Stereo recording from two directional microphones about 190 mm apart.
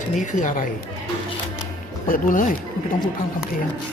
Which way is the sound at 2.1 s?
45° left (ahead or behind).